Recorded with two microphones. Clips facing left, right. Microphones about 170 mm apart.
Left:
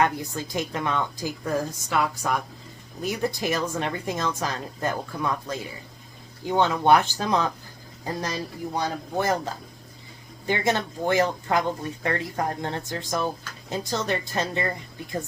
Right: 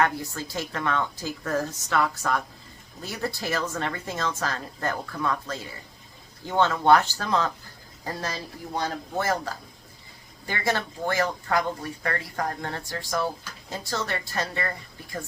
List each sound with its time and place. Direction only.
0.0 s a woman's voice: 20° left (ahead or behind)